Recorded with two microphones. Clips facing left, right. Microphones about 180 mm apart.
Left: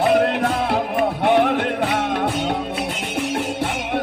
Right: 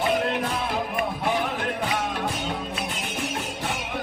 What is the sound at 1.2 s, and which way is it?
Music, 70° left (ahead or behind).